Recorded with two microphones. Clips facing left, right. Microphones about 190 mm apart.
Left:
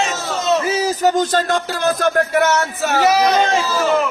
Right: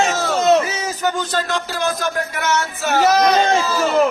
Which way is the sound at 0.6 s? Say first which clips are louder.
Left 6 dB; 35° left (ahead or behind).